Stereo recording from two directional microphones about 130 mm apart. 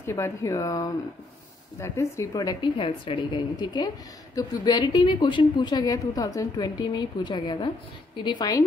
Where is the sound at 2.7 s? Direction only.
40° left (ahead or behind).